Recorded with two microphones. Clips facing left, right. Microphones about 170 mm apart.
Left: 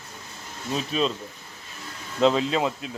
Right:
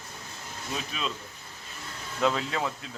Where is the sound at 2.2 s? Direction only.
20° left (ahead or behind).